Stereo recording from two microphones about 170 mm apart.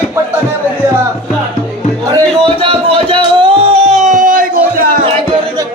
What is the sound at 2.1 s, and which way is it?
Music, 30° right (ahead or behind).